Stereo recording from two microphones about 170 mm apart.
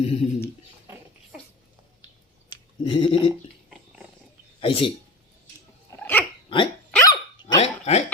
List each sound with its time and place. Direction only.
0.0 s speech: 35° left (ahead or behind)
2.5 s a sound: 30° left (ahead or behind)
4.6 s speech: 35° left (ahead or behind)
6.0 s dog: 10° left (ahead or behind)
6.5 s dog: 25° left (ahead or behind)
7.5 s hiccup: 35° left (ahead or behind)